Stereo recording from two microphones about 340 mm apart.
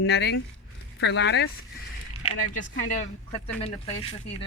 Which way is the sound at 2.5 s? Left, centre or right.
Left.